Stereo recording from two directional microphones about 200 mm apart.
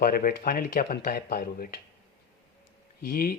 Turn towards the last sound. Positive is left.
turn(degrees=50)  # may be behind; listen again after turning